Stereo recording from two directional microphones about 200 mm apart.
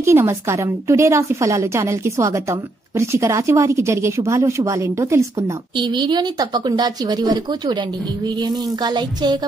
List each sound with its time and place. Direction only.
0.0 s a woman's voice: 15° right (ahead or behind)